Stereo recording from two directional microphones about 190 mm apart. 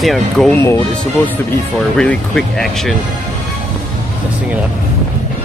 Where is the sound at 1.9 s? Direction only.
5° left (ahead or behind).